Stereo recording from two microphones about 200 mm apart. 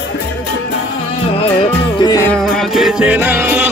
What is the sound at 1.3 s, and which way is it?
Music, 30° left (ahead or behind).